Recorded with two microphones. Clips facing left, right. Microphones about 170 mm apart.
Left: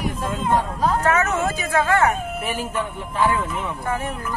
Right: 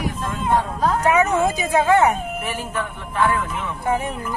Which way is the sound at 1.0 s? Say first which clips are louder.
Right 3 dB; 15° right (ahead or behind).